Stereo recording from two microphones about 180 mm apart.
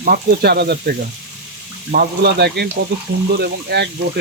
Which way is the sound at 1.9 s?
60° right (ahead or behind).